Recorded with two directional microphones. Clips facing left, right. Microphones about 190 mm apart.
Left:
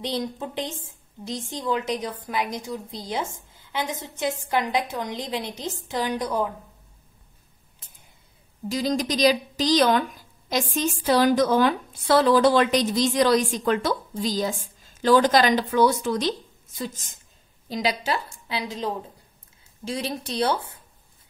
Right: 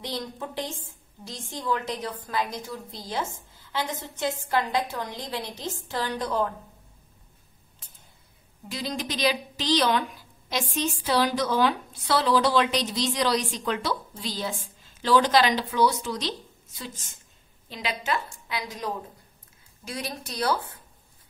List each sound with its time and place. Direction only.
0.0 s a woman's voice: 20° left (ahead or behind)
8.6 s a woman's voice: 40° left (ahead or behind); by 20.8 s 25° left (ahead or behind)